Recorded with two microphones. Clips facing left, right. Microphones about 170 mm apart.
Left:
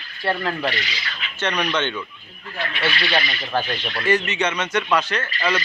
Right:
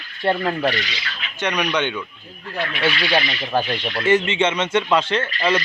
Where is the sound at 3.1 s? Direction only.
20° right (ahead or behind).